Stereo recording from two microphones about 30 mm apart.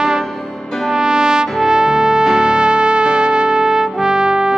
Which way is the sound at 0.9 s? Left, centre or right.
Right.